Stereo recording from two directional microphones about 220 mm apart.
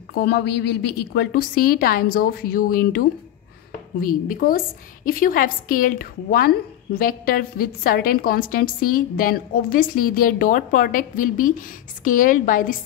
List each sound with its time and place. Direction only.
0.1 s a woman's voice: 45° left (ahead or behind)
4.3 s a woman's voice: 40° left (ahead or behind)